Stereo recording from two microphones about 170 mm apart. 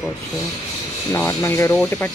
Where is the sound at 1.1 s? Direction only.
15° left (ahead or behind).